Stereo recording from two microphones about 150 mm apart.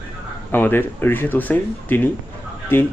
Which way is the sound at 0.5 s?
15° left (ahead or behind).